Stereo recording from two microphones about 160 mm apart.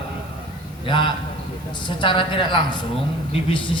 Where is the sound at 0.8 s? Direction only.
30° left (ahead or behind).